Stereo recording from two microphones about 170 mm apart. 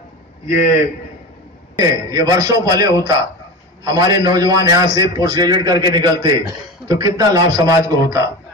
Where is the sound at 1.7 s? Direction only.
20° right (ahead or behind).